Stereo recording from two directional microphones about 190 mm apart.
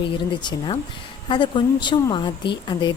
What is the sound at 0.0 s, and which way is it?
A woman's voice, 25° left (ahead or behind).